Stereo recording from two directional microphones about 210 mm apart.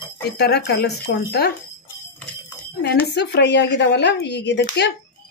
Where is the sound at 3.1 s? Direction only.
55° left (ahead or behind).